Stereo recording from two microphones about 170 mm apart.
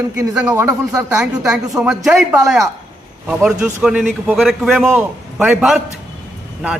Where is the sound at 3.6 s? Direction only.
5° right (ahead or behind).